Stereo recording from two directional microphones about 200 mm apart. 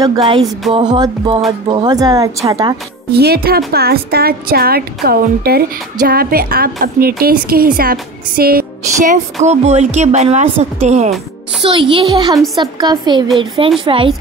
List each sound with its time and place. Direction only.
0.0 s speech: 20° right (ahead or behind)
3.1 s a woman's voice: 55° right (ahead or behind); by 11.1 s 35° right (ahead or behind)
11.6 s speech: 25° right (ahead or behind)